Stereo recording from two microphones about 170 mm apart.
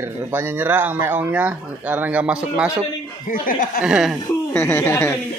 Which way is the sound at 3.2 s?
55° left (ahead or behind).